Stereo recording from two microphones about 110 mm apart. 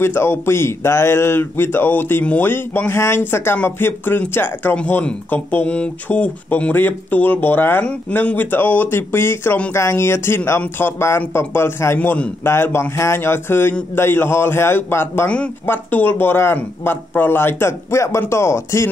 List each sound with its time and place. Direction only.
0.0 s speech: 20° left (ahead or behind)